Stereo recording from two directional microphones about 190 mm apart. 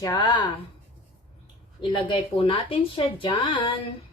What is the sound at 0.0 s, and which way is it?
Speech, 20° left (ahead or behind).